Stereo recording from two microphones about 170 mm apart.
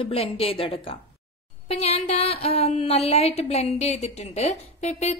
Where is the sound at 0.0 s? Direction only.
35° left (ahead or behind).